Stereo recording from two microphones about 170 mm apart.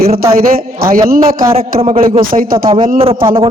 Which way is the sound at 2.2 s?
55° right (ahead or behind).